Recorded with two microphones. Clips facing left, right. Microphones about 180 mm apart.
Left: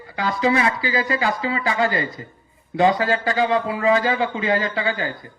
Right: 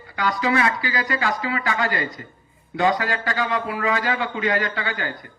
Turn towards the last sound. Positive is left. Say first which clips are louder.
# left 4 dB
turn(degrees=25)  # may be behind; listen again after turning